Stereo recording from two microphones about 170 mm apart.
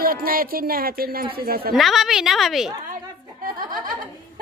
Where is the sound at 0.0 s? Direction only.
60° right (ahead or behind).